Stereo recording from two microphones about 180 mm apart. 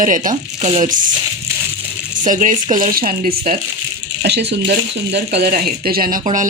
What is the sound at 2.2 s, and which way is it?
Speech, 45° right (ahead or behind).